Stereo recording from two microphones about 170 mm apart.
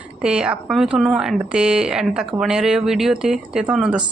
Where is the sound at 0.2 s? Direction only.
5° right (ahead or behind).